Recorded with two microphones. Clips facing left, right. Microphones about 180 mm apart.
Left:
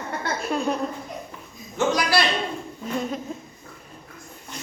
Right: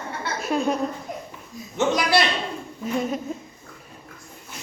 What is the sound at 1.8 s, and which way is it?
Speech, 20° right (ahead or behind).